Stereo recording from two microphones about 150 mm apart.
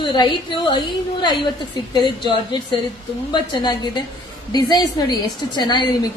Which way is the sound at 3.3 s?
30° left (ahead or behind).